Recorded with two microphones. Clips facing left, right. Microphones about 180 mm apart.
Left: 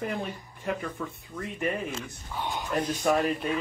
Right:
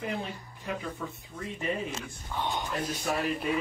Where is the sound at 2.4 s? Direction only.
10° left (ahead or behind).